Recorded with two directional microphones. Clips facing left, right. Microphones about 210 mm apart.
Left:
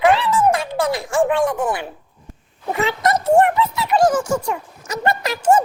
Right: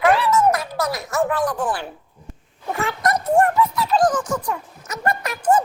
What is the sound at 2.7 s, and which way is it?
Speech, 25° left (ahead or behind).